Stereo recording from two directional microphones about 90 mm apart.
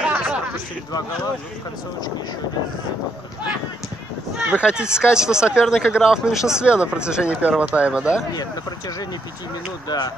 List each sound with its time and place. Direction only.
0.0 s a sound: 15° right (ahead or behind)
4.4 s speech: 15° right (ahead or behind)
9.8 s speech: 50° left (ahead or behind)